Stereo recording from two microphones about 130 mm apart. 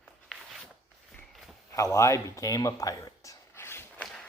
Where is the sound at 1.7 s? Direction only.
25° left (ahead or behind).